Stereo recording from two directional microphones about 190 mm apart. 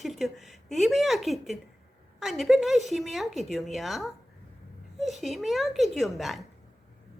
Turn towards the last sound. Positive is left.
turn(degrees=0)  # may be behind; listen again after turning